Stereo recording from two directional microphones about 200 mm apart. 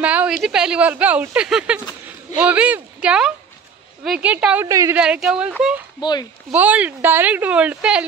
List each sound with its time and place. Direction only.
0.0 s a sound: 5° right (ahead or behind)
0.4 s speech: 5° right (ahead or behind)
5.0 s speech: 5° right (ahead or behind)
5.9 s speech: 20° left (ahead or behind)
6.5 s speech: 5° right (ahead or behind)